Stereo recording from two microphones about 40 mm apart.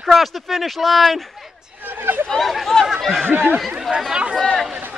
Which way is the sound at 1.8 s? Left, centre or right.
Right.